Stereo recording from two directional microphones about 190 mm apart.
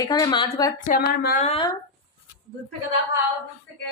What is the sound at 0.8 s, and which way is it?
Speech, 50° left (ahead or behind).